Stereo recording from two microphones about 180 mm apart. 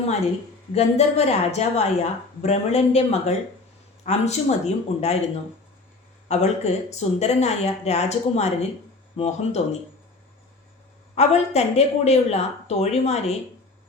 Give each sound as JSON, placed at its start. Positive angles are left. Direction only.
{"t": 0.7, "sound": "speech", "side_deg": 35}
{"t": 6.2, "sound": "speech", "side_deg": 40}
{"t": 11.1, "sound": "speech", "side_deg": 35}